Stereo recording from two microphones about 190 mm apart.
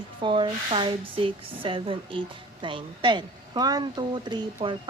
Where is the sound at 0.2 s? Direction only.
25° right (ahead or behind).